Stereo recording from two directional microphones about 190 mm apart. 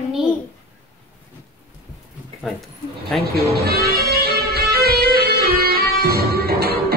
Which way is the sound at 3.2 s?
55° right (ahead or behind).